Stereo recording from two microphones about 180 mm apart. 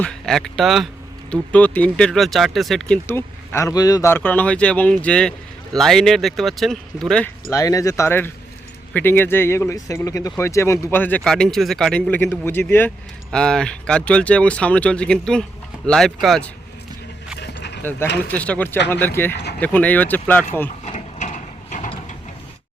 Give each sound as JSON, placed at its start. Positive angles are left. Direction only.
{"t": 0.0, "sound": "speech", "side_deg": 5}
{"t": 7.5, "sound": "speech", "side_deg": 20}
{"t": 17.4, "sound": "dog", "side_deg": 70}
{"t": 18.3, "sound": "speech", "side_deg": 5}
{"t": 20.8, "sound": "ratchet", "side_deg": 40}